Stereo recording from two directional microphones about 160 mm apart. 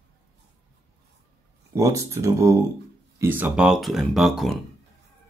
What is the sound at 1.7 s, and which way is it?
Speech, 20° right (ahead or behind).